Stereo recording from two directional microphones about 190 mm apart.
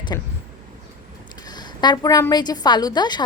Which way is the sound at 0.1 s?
20° left (ahead or behind).